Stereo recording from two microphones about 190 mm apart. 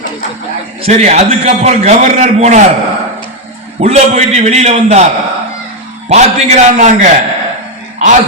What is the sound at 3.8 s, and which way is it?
A man's voice, 35° right (ahead or behind).